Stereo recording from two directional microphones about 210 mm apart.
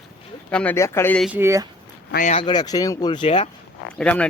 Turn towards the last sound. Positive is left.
turn(degrees=5)  # may be behind; listen again after turning